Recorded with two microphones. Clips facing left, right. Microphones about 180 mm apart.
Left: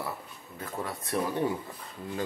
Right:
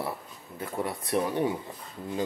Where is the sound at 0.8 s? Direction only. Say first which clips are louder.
Right 3 dB; 20° right (ahead or behind).